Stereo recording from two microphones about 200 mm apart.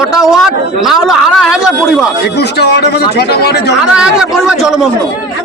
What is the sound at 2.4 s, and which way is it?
A man's voice, 55° left (ahead or behind).